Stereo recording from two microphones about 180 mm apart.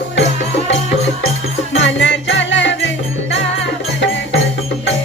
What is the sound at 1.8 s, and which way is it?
Music, 85° left.